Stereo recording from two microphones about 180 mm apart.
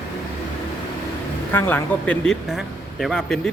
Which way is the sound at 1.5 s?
10° left (ahead or behind).